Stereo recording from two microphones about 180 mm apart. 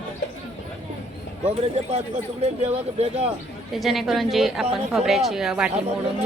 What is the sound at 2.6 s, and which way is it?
Speech, 35° right (ahead or behind).